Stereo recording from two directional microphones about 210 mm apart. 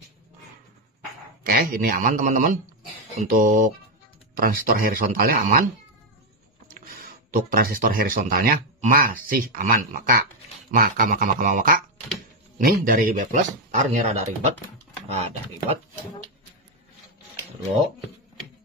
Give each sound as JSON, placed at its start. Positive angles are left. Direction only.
{"t": 1.4, "sound": "speech", "side_deg": -45}
{"t": 6.7, "sound": "speech", "side_deg": -40}